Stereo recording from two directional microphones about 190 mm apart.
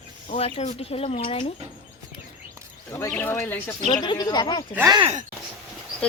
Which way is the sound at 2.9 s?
15° left (ahead or behind).